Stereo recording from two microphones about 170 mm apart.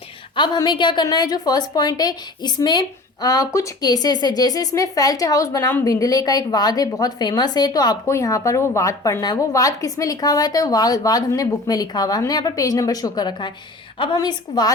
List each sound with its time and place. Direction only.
0.3 s a woman's voice: 25° left (ahead or behind)